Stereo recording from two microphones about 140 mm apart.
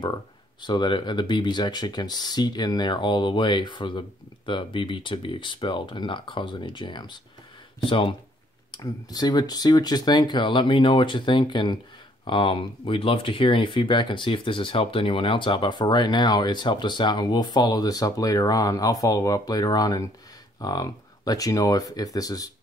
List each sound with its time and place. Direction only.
0.0 s speech: 30° left (ahead or behind)
8.7 s speech: 30° left (ahead or behind)